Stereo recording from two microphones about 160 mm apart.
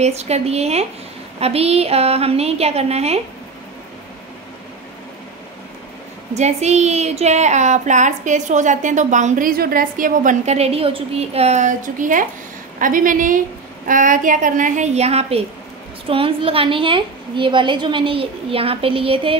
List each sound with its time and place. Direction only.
0.0 s a woman's voice: 45° right (ahead or behind)
6.3 s a woman's voice: 45° right (ahead or behind)